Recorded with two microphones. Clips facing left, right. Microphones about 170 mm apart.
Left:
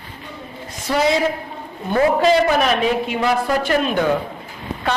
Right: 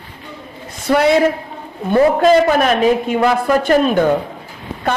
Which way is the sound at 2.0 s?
45° right (ahead or behind).